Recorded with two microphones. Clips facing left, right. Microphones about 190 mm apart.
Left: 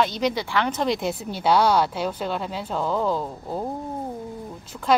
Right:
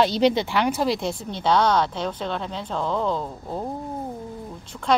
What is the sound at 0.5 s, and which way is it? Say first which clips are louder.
Speech: right 1 dB; 10° right (ahead or behind).